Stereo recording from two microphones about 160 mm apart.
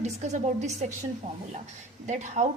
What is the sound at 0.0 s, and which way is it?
Speech, 45° right (ahead or behind).